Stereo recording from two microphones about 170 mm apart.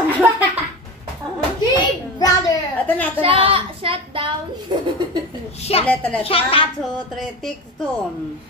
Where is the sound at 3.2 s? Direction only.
30° right (ahead or behind).